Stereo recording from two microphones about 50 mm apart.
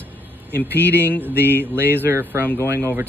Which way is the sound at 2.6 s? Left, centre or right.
Right.